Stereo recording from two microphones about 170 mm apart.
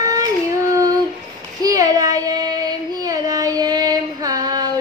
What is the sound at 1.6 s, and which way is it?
Child singing, 20° right (ahead or behind).